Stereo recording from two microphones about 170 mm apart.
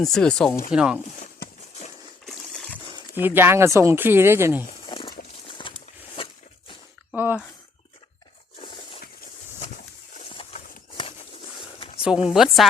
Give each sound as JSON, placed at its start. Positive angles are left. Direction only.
{"t": 0.0, "sound": "speech", "side_deg": 5}
{"t": 1.2, "sound": "horse", "side_deg": 45}
{"t": 2.2, "sound": "coin", "side_deg": 5}
{"t": 3.2, "sound": "speech", "side_deg": -10}
{"t": 4.9, "sound": "a sound", "side_deg": 30}
{"t": 7.2, "sound": "speech", "side_deg": -10}
{"t": 8.5, "sound": "a sound", "side_deg": 30}
{"t": 10.2, "sound": "a sound", "side_deg": 40}
{"t": 12.3, "sound": "speech", "side_deg": 0}